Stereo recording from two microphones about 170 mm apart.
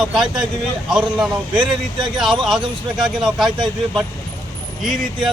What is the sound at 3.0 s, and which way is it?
Speech, 5° right (ahead or behind).